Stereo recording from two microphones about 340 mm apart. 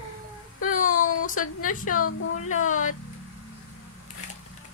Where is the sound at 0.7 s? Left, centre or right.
Left.